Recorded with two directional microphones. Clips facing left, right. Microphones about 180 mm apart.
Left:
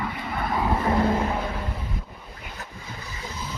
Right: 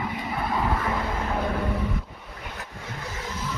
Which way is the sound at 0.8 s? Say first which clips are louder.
Left 6 dB; 35° left (ahead or behind).